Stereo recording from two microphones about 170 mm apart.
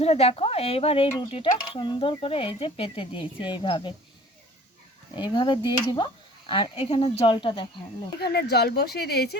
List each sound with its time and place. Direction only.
0.0 s speech: 35° left (ahead or behind)
5.1 s speech: 25° left (ahead or behind)
8.2 s speech: 70° left (ahead or behind)